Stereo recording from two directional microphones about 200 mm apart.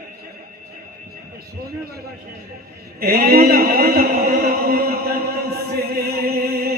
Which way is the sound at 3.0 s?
50° right (ahead or behind).